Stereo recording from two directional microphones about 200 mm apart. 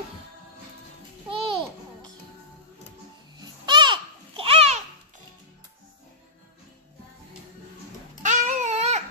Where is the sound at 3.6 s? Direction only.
25° right (ahead or behind).